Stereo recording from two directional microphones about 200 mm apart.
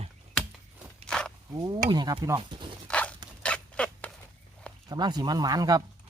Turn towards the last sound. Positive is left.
turn(degrees=-20)  # may be behind; listen again after turning